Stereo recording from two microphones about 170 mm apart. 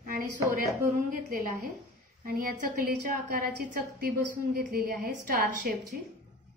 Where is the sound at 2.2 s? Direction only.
55° right (ahead or behind).